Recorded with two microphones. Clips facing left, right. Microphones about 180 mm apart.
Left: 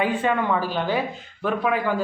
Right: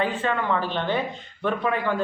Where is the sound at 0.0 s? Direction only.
15° left (ahead or behind).